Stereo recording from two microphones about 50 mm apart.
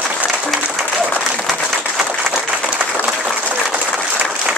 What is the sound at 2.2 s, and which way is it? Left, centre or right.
Applause, centre.